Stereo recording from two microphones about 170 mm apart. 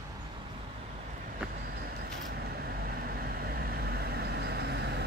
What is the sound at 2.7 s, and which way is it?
Vehicle, 65° right (ahead or behind).